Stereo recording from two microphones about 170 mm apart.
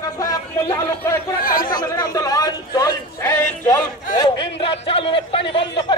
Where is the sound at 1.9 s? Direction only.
20° left (ahead or behind).